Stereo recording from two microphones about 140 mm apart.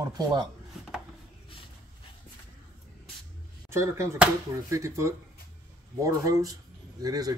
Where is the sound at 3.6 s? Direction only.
20° right (ahead or behind).